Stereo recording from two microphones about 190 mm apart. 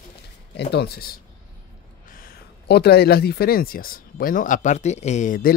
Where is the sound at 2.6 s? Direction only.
60° left (ahead or behind).